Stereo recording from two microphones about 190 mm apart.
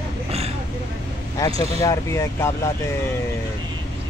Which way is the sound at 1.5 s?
30° right (ahead or behind).